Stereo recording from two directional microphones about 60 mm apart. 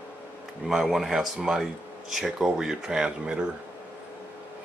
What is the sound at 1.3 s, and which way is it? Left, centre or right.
Speech, centre.